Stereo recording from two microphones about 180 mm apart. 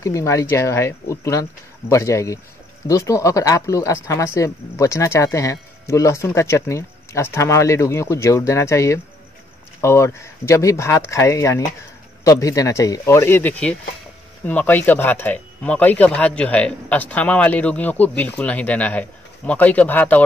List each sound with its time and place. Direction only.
0.0 s speech: 15° left (ahead or behind)